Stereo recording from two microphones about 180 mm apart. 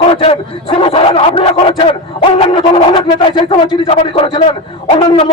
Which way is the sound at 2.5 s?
30° left (ahead or behind).